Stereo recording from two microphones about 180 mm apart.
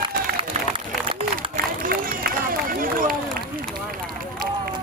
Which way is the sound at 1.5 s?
50° right (ahead or behind).